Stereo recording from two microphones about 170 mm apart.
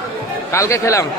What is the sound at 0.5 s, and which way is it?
Speech, 20° left (ahead or behind).